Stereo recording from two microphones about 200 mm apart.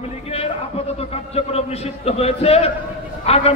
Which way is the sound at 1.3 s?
30° left (ahead or behind).